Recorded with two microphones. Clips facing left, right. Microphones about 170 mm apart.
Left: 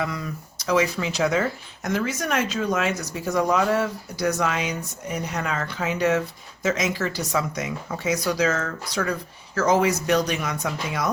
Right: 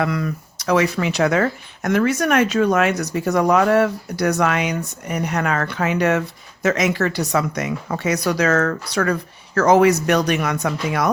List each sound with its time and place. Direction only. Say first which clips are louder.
0.0 s speech: right 7 dB; 65° right (ahead or behind)